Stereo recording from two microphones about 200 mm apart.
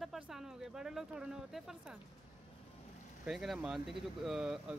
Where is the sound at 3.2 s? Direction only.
Centre (ahead or behind).